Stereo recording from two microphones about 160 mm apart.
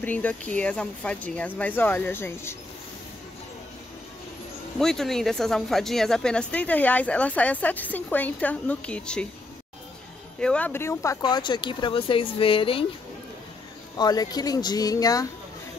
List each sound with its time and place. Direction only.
0.0 s speech: 10° left (ahead or behind)
4.7 s speech: centre (ahead or behind)
10.4 s speech: 10° left (ahead or behind); by 12.8 s 35° left (ahead or behind)
13.9 s speech: 25° left (ahead or behind)